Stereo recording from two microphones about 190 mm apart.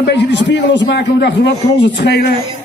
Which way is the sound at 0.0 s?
65° left (ahead or behind).